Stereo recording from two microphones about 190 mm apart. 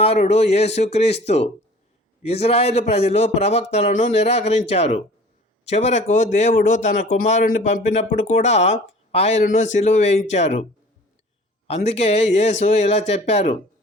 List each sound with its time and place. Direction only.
0.0 s speech: 30° left (ahead or behind)
11.7 s speech: 35° left (ahead or behind)